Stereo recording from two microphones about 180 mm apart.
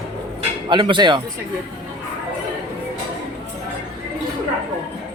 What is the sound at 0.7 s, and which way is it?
Speech, 25° right (ahead or behind).